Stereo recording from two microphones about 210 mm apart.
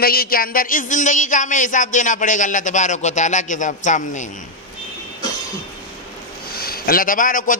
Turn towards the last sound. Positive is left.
turn(degrees=40)  # may be behind; listen again after turning